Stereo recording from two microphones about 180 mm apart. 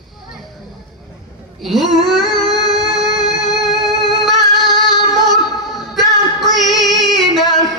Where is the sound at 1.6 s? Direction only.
Centre (ahead or behind).